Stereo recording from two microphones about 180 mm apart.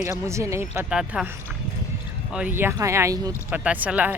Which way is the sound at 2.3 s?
10° right (ahead or behind).